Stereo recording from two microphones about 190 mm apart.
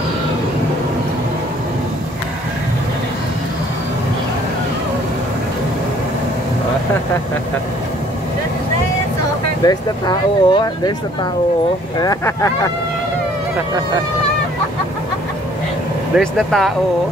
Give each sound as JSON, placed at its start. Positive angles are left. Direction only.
{"t": 9.6, "sound": "speech", "side_deg": 20}
{"t": 12.0, "sound": "speech", "side_deg": 15}
{"t": 16.2, "sound": "speech", "side_deg": 0}